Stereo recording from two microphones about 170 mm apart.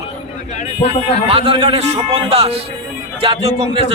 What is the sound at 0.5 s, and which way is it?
Speech, 40° left (ahead or behind).